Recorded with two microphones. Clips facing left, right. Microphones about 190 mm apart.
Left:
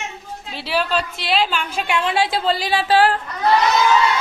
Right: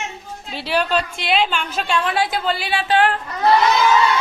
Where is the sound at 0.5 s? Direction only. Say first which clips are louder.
Right 1 dB; 5° left (ahead or behind).